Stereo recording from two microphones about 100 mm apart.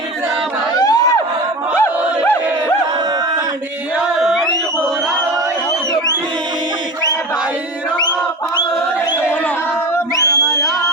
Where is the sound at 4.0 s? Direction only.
5° right (ahead or behind).